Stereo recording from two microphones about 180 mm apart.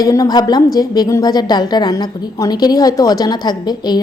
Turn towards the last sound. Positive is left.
turn(degrees=20)  # may be behind; listen again after turning